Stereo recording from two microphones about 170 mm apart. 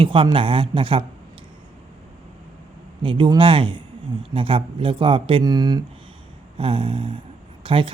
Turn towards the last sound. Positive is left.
turn(degrees=-30)  # may be behind; listen again after turning